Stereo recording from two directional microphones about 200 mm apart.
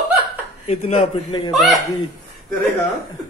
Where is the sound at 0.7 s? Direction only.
30° left (ahead or behind).